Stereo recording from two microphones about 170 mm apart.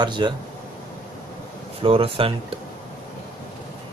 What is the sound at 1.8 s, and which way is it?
Speech, 35° right (ahead or behind).